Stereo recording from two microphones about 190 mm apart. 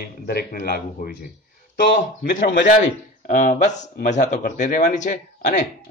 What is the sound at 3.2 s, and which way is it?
A man's voice, 40° left (ahead or behind).